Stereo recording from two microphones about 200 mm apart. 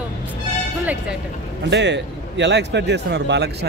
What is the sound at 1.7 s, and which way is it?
A man's voice, 60° right (ahead or behind).